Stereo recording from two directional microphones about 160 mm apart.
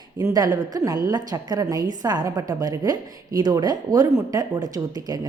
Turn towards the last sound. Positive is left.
turn(degrees=-25)  # may be behind; listen again after turning